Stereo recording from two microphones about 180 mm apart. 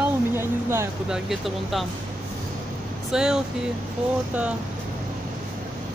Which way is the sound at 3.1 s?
5° right (ahead or behind).